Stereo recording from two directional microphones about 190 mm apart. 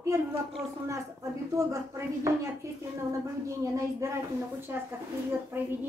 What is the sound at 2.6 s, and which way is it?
A woman's voice, 15° right (ahead or behind).